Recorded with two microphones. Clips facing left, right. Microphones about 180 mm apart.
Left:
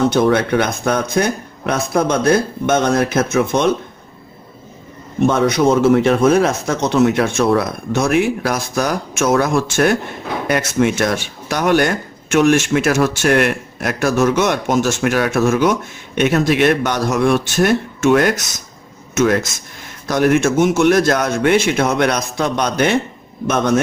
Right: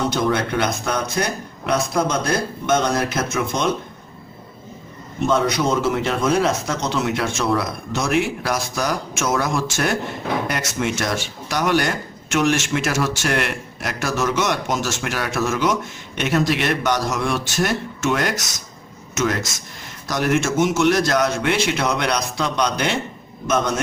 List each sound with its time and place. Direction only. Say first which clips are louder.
0.1 s speech: left 6 dB; 55° left (ahead or behind)
5.3 s a man's voice: left 4 dB; 55° left (ahead or behind)